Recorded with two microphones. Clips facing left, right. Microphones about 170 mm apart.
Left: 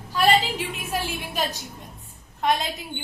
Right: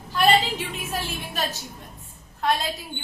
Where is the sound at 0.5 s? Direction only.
10° left (ahead or behind).